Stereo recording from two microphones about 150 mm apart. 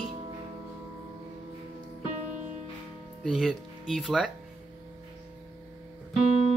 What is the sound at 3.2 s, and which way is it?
Speech, centre (ahead or behind).